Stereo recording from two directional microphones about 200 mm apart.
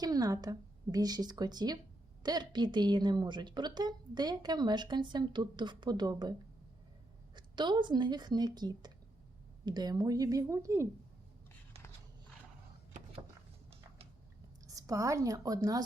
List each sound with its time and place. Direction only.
0.0 s a woman's voice: 20° right (ahead or behind)
7.3 s a woman's voice: 20° right (ahead or behind)
14.8 s speech: 15° right (ahead or behind)